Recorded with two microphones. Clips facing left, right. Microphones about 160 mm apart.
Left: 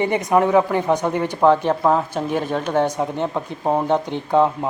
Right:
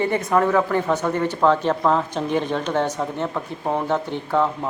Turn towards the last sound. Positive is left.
turn(degrees=15)  # may be behind; listen again after turning